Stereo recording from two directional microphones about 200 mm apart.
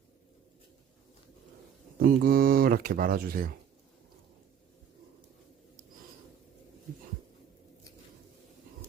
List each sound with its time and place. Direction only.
2.0 s speech: 50° right (ahead or behind)